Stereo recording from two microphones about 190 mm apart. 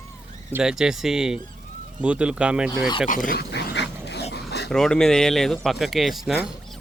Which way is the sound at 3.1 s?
45° left (ahead or behind).